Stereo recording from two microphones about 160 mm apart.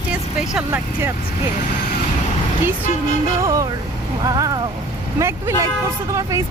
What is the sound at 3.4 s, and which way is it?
Speech, 20° right (ahead or behind).